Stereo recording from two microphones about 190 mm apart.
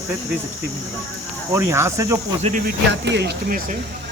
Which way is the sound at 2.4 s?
45° right (ahead or behind).